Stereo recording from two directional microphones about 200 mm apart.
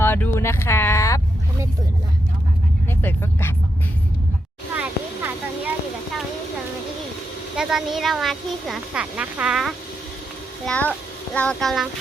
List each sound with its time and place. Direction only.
0.0 s speech: 10° left (ahead or behind)
3.0 s speech: 10° left (ahead or behind)
4.7 s a sound: 10° right (ahead or behind)
7.5 s a child's voice: 5° right (ahead or behind)